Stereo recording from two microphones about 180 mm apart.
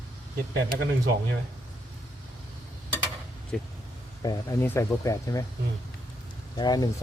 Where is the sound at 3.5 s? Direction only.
5° left (ahead or behind).